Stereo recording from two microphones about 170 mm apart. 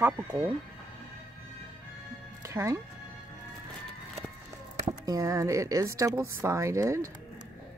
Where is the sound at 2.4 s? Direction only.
15° right (ahead or behind).